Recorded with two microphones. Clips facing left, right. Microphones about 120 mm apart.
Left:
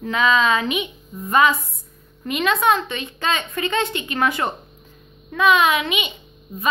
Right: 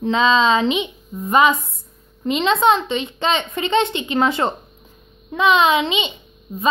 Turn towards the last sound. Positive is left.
turn(degrees=-25)  # may be behind; listen again after turning